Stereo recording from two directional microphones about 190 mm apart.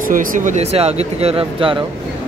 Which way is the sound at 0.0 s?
45° right (ahead or behind).